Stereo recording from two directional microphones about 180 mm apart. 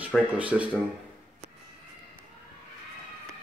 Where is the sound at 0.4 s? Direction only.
10° right (ahead or behind).